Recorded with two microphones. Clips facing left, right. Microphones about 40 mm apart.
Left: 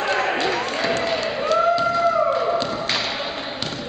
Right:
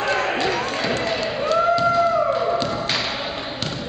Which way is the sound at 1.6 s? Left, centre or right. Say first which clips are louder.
Right 2 dB; centre.